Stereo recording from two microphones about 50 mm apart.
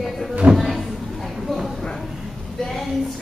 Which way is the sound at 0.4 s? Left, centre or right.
Right.